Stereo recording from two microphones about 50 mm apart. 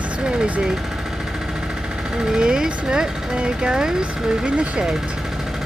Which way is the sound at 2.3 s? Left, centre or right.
Centre.